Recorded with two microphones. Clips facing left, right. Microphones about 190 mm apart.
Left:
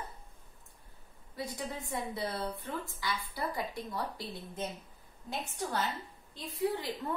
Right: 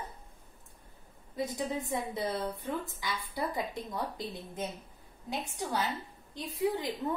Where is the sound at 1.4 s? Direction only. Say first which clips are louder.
Right 5 dB; 20° right (ahead or behind).